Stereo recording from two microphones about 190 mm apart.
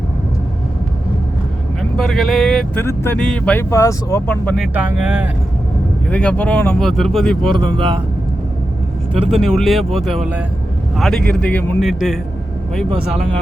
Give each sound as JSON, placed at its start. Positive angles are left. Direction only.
{"t": 2.0, "sound": "speech", "side_deg": 0}
{"t": 2.8, "sound": "speech", "side_deg": 10}
{"t": 6.1, "sound": "speech", "side_deg": 5}
{"t": 7.5, "sound": "speech", "side_deg": -25}
{"t": 9.1, "sound": "speech", "side_deg": -30}
{"t": 9.4, "sound": "speech", "side_deg": 0}